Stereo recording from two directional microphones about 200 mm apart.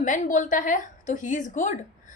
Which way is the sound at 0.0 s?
40° left (ahead or behind).